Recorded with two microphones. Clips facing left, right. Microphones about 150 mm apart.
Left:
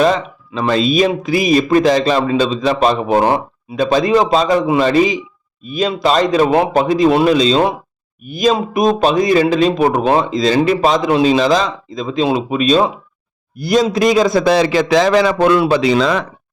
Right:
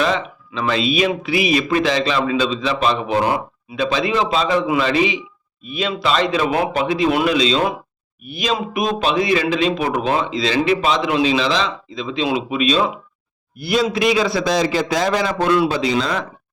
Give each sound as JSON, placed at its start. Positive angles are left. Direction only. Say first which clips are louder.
{"t": 0.0, "sound": "a man's voice", "louder": "left 6 dB", "side_deg": 40}